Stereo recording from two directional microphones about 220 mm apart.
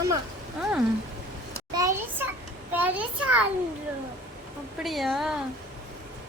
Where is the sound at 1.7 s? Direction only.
15° right (ahead or behind).